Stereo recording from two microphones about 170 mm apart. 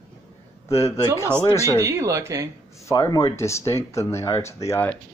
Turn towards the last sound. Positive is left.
turn(degrees=10)  # may be behind; listen again after turning